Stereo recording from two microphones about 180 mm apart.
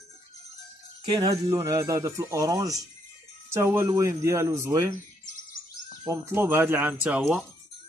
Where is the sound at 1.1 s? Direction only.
25° right (ahead or behind).